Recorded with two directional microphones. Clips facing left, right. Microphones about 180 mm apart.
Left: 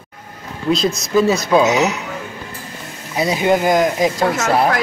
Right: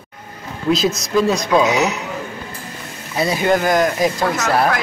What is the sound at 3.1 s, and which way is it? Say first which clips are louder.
Speech: left 1 dB; 15° left (ahead or behind).